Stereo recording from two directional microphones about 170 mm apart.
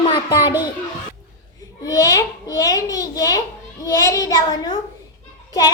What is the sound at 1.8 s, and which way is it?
A child's voice, 20° left (ahead or behind).